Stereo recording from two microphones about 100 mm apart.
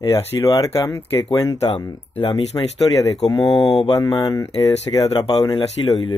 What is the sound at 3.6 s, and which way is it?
Mantra, 5° left (ahead or behind).